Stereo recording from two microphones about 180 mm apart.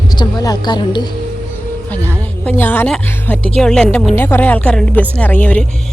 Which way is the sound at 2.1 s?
10° left (ahead or behind).